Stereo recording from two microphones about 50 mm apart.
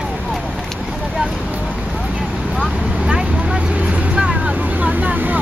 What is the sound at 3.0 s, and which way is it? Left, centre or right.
Vehicle, centre.